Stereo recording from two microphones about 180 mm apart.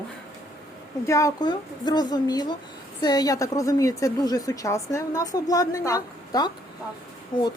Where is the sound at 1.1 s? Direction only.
15° left (ahead or behind).